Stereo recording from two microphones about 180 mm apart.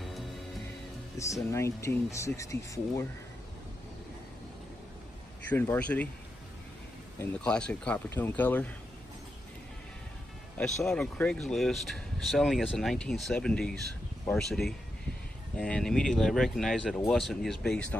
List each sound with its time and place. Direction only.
1.1 s speech: 15° left (ahead or behind)
5.5 s speech: 10° left (ahead or behind)
7.4 s speech: 5° left (ahead or behind)
10.6 s speech: 5° left (ahead or behind)